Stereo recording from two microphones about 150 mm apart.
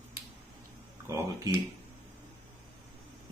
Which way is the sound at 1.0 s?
20° right (ahead or behind).